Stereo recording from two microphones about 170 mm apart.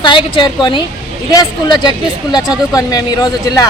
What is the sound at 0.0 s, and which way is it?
A woman's voice, 30° left (ahead or behind).